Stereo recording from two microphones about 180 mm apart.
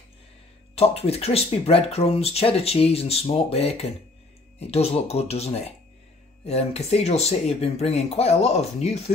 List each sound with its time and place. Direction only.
0.7 s speech: 35° left (ahead or behind)